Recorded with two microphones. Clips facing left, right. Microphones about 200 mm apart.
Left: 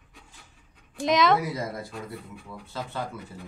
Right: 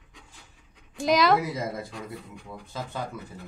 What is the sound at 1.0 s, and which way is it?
Speech, centre (ahead or behind).